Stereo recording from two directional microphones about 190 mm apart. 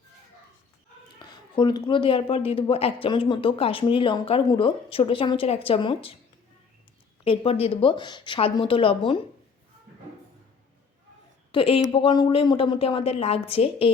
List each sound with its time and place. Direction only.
1.2 s a man's voice: 20° left (ahead or behind)
7.3 s a man's voice: 30° left (ahead or behind)
11.5 s a man's voice: 30° left (ahead or behind)